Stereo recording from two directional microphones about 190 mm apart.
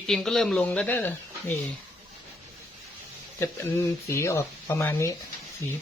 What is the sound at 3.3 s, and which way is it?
Speech, 15° left (ahead or behind).